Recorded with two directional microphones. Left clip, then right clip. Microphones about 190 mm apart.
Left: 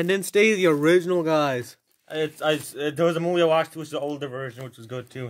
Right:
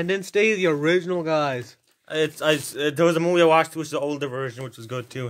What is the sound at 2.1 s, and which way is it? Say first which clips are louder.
Speech: right 3 dB; 20° right (ahead or behind).